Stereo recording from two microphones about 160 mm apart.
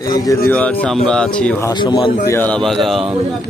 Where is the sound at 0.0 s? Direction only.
20° left (ahead or behind).